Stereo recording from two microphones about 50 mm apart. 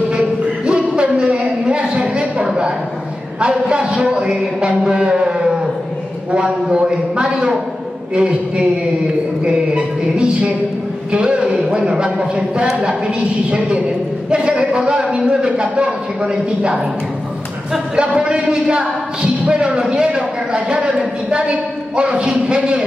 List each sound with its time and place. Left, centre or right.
0.1 s a sound: centre
3.3 s a man's voice: centre
17.9 s speech: right